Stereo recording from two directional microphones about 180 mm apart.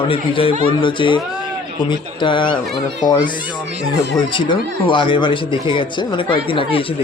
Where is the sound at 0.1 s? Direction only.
30° left (ahead or behind).